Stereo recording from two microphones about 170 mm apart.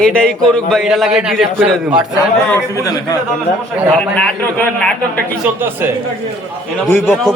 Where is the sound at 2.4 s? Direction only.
15° left (ahead or behind).